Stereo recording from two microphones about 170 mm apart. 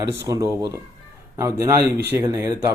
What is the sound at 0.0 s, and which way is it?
A man's voice, 15° right (ahead or behind).